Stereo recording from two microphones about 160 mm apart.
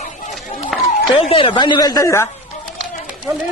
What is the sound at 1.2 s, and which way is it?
A woman's voice, 35° left (ahead or behind).